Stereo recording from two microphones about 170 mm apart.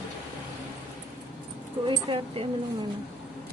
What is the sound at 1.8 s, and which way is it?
Speech, 30° right (ahead or behind).